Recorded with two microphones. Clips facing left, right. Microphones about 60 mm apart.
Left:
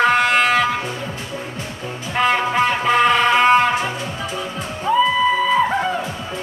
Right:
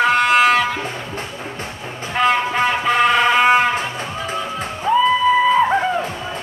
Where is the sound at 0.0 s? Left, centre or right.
Centre.